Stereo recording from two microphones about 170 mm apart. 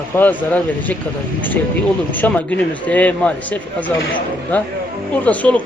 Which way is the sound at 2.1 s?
10° left (ahead or behind).